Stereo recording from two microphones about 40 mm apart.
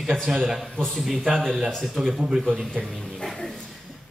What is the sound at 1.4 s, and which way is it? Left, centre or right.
Speech, centre.